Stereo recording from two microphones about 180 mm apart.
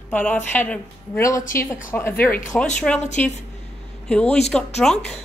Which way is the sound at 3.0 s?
40° left (ahead or behind).